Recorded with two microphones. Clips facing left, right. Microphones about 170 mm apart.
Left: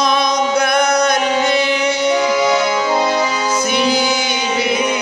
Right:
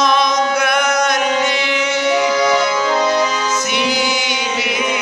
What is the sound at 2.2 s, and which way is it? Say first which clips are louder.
Music: even; 15° left (ahead or behind).